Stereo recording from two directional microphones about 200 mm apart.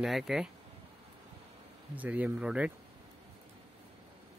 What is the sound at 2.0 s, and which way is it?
Speech, 5° right (ahead or behind).